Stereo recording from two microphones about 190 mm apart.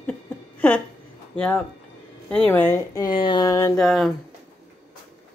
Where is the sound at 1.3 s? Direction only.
10° left (ahead or behind).